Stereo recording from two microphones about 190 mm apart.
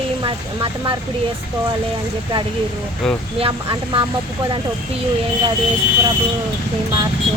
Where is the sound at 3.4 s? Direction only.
30° right (ahead or behind).